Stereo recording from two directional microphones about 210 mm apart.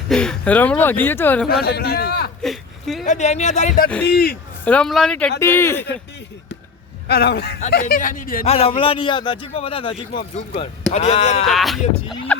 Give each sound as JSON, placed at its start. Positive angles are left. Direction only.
{"t": 0.1, "sound": "speech", "side_deg": 5}
{"t": 1.5, "sound": "a man's voice", "side_deg": 50}
{"t": 2.4, "sound": "a sound", "side_deg": 0}
{"t": 3.1, "sound": "speech", "side_deg": 30}
{"t": 4.0, "sound": "a man's voice", "side_deg": 50}
{"t": 4.6, "sound": "speech", "side_deg": 5}
{"t": 7.1, "sound": "a man's voice", "side_deg": 50}
{"t": 8.4, "sound": "a man's voice", "side_deg": 30}
{"t": 11.4, "sound": "speech", "side_deg": 0}